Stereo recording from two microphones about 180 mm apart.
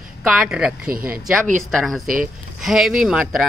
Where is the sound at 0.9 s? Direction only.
55° right (ahead or behind).